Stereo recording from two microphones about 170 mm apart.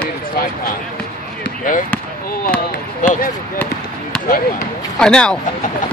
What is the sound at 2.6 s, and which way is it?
Speech, 55° left (ahead or behind).